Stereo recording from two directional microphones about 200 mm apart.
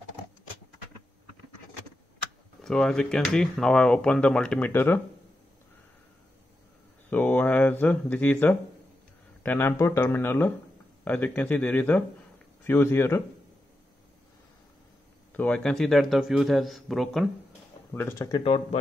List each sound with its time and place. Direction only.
2.6 s speech: 5° left (ahead or behind)
7.1 s speech: 10° left (ahead or behind)
15.3 s speech: 5° left (ahead or behind)
17.9 s speech: 10° left (ahead or behind)
18.4 s speech: 30° left (ahead or behind)